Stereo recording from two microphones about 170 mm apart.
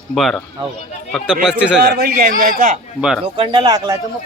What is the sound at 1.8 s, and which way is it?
Speech, 60° right (ahead or behind).